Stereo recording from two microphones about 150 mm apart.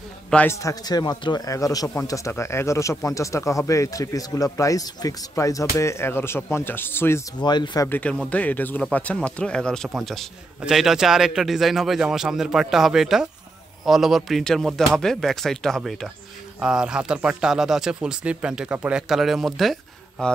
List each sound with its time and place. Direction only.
0.3 s a man's voice: 10° left (ahead or behind)
0.6 s speech: 25° left (ahead or behind)
7.3 s speech: 30° left (ahead or behind)
8.0 s speech: 10° left (ahead or behind)